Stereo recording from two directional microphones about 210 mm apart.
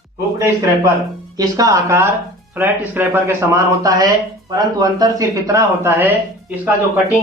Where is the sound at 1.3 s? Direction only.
15° right (ahead or behind).